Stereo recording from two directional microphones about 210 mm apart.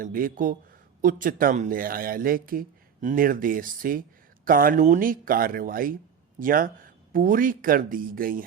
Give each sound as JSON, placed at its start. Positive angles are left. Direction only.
{"t": 0.0, "sound": "speech", "side_deg": -40}